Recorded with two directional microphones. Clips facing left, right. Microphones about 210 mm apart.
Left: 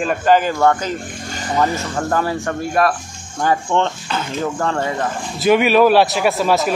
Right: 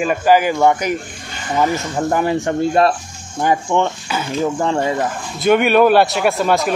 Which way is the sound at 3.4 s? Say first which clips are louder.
Right 1 dB; 15° right (ahead or behind).